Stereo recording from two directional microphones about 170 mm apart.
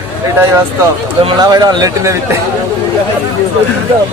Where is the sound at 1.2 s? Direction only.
25° right (ahead or behind).